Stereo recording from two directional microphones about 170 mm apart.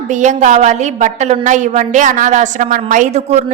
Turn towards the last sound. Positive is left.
turn(degrees=-40)  # may be behind; listen again after turning